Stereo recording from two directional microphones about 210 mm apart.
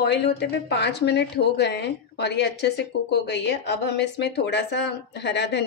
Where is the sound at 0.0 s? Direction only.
50° left (ahead or behind).